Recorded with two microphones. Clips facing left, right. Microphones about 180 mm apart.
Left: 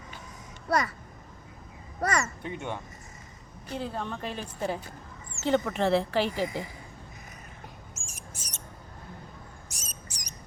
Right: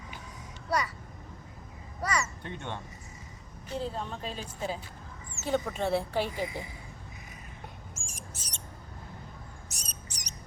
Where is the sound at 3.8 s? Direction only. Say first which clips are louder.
Left 1 dB; 65° left (ahead or behind).